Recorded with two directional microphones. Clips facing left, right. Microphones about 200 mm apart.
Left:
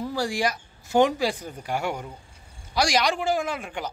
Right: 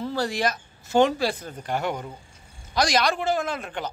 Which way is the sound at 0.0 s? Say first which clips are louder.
Even; 10° left (ahead or behind).